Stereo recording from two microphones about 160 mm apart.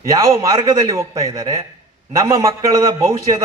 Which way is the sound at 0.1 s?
20° right (ahead or behind).